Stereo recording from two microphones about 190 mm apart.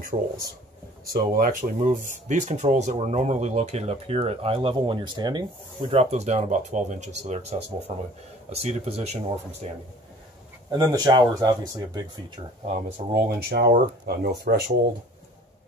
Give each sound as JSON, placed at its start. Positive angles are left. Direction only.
{"t": 0.1, "sound": "speech", "side_deg": -30}
{"t": 1.0, "sound": "speech", "side_deg": -45}
{"t": 10.7, "sound": "speech", "side_deg": -20}
{"t": 12.6, "sound": "speech", "side_deg": -45}
{"t": 13.4, "sound": "speech", "side_deg": -55}